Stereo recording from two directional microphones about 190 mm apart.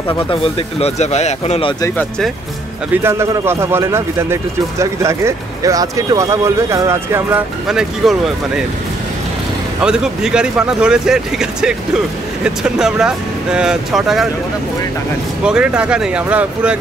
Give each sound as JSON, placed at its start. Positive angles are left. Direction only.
{"t": 0.1, "sound": "speech", "side_deg": 30}
{"t": 1.8, "sound": "speech", "side_deg": 5}
{"t": 3.0, "sound": "a man's voice", "side_deg": -15}
{"t": 7.6, "sound": "speech", "side_deg": 0}
{"t": 9.8, "sound": "speech", "side_deg": -5}
{"t": 15.4, "sound": "speech", "side_deg": -5}